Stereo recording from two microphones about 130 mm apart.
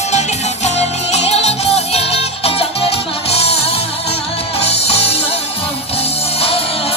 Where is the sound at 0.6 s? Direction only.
55° left (ahead or behind).